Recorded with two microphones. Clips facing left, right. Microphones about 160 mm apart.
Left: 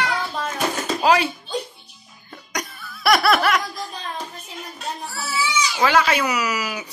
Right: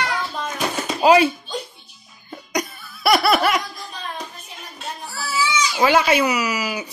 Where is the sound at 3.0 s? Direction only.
5° right (ahead or behind).